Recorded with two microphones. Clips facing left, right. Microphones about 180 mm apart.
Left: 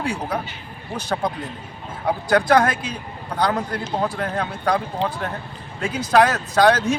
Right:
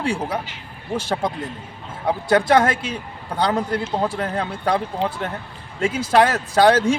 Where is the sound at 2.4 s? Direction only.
25° right (ahead or behind).